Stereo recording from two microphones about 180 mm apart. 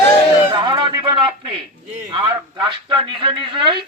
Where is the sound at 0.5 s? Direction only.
25° right (ahead or behind).